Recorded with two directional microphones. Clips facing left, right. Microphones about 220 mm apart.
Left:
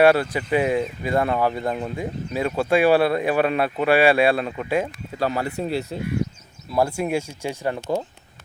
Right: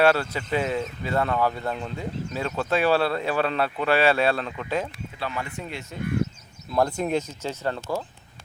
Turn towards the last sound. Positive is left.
turn(degrees=15)  # may be behind; listen again after turning